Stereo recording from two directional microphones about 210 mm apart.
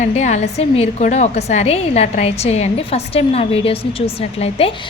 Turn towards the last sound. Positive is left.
turn(degrees=30)  # may be behind; listen again after turning